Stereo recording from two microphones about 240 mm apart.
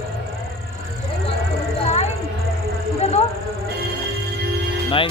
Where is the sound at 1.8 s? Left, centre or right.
Left.